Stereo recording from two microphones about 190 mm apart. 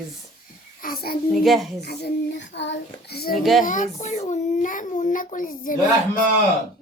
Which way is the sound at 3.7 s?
40° left (ahead or behind).